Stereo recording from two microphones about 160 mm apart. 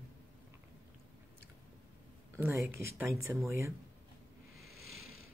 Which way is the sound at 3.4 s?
15° right (ahead or behind).